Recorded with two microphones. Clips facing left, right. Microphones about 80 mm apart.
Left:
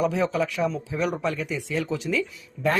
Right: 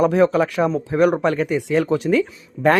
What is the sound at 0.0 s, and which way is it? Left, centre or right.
Speech, right.